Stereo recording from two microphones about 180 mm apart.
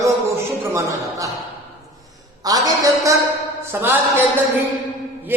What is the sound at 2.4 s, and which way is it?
A man's voice, 20° right (ahead or behind).